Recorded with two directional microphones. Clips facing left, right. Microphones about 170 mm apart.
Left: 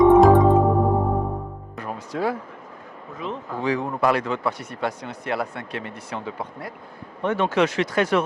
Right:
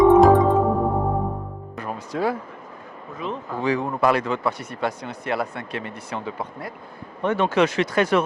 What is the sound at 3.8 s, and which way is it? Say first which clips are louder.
Speech: right 1 dB; 20° right (ahead or behind).